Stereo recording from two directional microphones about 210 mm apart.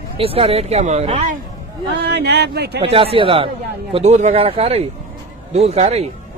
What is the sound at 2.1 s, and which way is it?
Speech, 50° right (ahead or behind).